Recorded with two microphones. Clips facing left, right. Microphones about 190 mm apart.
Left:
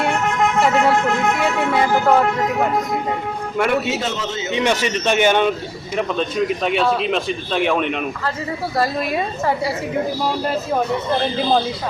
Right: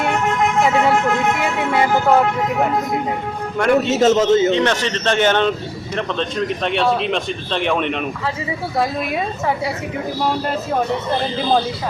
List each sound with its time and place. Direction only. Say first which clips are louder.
1.7 s speech: right 1 dB; 5° right (ahead or behind)
3.6 s speech: right 3 dB; 5° left (ahead or behind)
4.0 s a man's voice: right 12 dB; 45° right (ahead or behind)
4.5 s a man's voice: right 1 dB; 10° left (ahead or behind)